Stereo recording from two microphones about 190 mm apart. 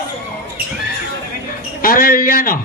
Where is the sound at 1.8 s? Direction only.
50° left (ahead or behind).